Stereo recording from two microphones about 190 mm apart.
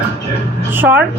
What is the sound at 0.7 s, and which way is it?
Speech, 10° right (ahead or behind).